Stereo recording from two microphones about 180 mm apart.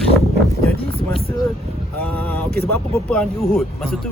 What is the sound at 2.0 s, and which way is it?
Speech, 10° left (ahead or behind).